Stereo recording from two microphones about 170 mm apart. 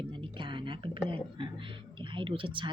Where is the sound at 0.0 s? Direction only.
30° right (ahead or behind).